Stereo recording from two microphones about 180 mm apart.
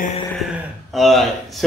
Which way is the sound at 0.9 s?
Centre (ahead or behind).